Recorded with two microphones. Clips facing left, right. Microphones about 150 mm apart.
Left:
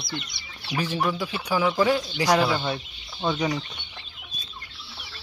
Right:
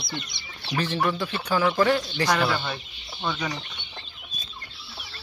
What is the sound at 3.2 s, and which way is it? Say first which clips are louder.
Speech: left 4 dB; 30° left (ahead or behind).